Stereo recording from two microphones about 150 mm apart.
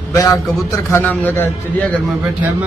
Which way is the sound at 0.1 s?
20° left (ahead or behind).